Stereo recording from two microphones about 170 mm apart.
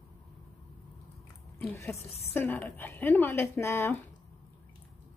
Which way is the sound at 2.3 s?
10° left (ahead or behind).